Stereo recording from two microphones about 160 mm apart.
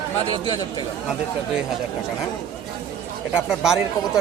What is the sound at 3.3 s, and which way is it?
Speech, 5° right (ahead or behind).